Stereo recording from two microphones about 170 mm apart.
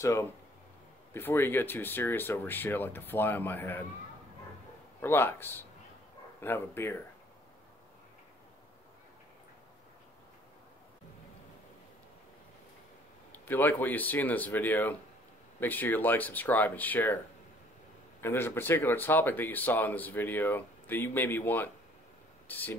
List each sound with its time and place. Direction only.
0.0 s speech: 15° left (ahead or behind)
5.0 s speech: 15° left (ahead or behind)
13.3 s speech: 10° left (ahead or behind)
18.2 s speech: 15° left (ahead or behind)